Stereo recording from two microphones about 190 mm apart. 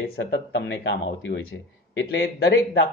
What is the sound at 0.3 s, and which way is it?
Speech, 70° left (ahead or behind).